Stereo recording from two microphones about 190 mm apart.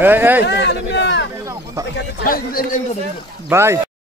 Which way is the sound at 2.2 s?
50° left (ahead or behind).